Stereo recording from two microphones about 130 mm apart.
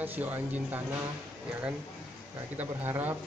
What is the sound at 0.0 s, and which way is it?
Speech, 15° right (ahead or behind).